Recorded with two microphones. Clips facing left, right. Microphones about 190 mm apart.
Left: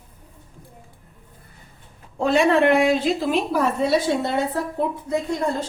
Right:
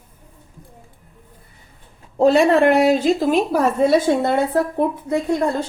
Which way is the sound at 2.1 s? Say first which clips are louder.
Right 4 dB; 35° right (ahead or behind).